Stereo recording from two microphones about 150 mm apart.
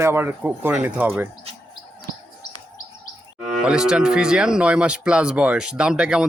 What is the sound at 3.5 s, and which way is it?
Cattle, 5° right (ahead or behind).